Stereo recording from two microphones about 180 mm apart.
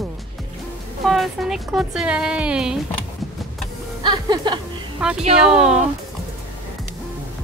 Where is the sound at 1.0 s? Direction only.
Centre (ahead or behind).